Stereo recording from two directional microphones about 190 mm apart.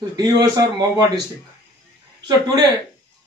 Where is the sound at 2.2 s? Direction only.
20° right (ahead or behind).